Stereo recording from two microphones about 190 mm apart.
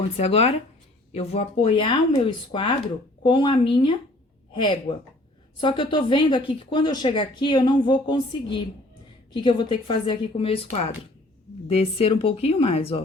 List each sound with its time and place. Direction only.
0.0 s a woman's voice: 35° left (ahead or behind)